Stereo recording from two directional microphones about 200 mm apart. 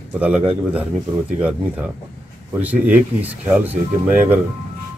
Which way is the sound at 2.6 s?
5° right (ahead or behind).